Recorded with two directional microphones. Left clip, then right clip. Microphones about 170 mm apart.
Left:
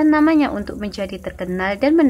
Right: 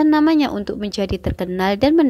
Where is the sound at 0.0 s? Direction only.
25° right (ahead or behind).